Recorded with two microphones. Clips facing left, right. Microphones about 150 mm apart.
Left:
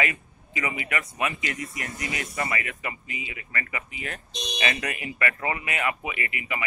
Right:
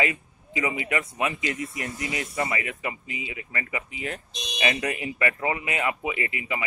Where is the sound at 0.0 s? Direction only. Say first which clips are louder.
Right 2 dB; 25° right (ahead or behind).